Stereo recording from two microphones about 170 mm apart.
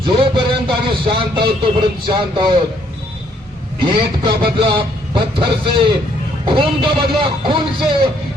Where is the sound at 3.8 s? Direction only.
30° right (ahead or behind).